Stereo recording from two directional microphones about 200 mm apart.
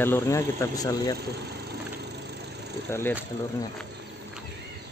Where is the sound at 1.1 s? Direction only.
55° right (ahead or behind).